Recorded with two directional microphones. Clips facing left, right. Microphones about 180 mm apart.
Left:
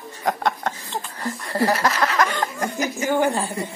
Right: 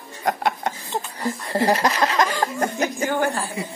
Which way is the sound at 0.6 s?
15° right (ahead or behind).